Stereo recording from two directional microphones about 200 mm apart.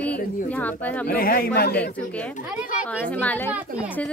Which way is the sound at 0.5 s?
10° left (ahead or behind).